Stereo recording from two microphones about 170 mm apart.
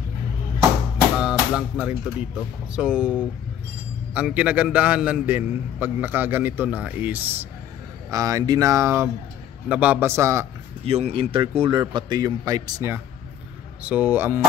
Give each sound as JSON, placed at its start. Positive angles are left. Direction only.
{"t": 1.1, "sound": "a man's voice", "side_deg": -5}
{"t": 8.1, "sound": "a man's voice", "side_deg": -20}
{"t": 10.8, "sound": "a man's voice", "side_deg": -35}